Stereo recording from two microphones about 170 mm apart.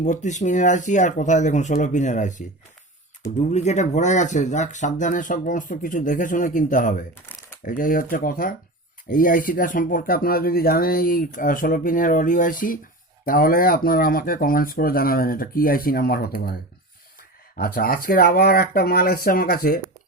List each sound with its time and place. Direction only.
0.0 s speech: 45° left (ahead or behind)
3.5 s speech: 40° left (ahead or behind); by 16.6 s 60° left (ahead or behind)
17.6 s speech: 60° left (ahead or behind)